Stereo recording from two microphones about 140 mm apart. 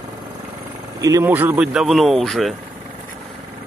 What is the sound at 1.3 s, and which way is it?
Speech, 15° right (ahead or behind).